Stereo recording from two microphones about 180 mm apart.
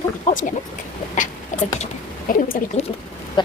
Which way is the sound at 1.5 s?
40° left (ahead or behind).